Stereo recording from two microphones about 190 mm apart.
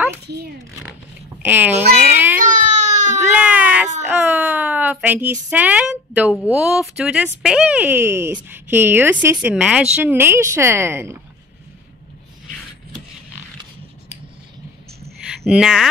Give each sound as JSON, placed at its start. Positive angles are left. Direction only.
{"t": 1.4, "sound": "speech", "side_deg": -10}
{"t": 2.4, "sound": "baby cry", "side_deg": -40}
{"t": 3.3, "sound": "cat", "side_deg": -5}
{"t": 4.0, "sound": "a sound", "side_deg": -10}
{"t": 6.5, "sound": "a woman's voice", "side_deg": -5}
{"t": 15.1, "sound": "a sound", "side_deg": 0}